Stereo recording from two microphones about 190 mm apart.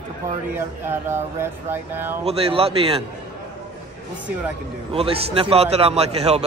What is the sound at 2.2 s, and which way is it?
Speech, 30° right (ahead or behind).